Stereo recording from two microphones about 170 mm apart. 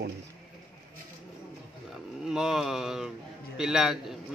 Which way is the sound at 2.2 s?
5° right (ahead or behind).